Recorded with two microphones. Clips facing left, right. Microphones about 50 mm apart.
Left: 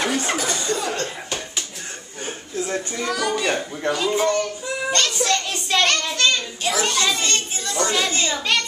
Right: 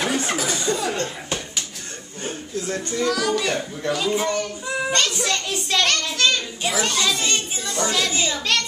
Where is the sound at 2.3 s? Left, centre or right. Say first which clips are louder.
Left 1 dB; centre.